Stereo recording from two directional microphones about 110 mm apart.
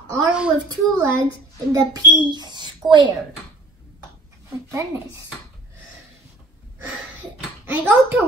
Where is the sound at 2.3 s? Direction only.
40° right (ahead or behind).